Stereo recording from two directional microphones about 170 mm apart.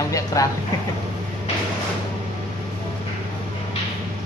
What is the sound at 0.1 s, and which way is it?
Speech, 20° left (ahead or behind).